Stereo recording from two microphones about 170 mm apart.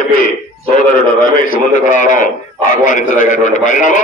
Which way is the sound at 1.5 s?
50° left (ahead or behind).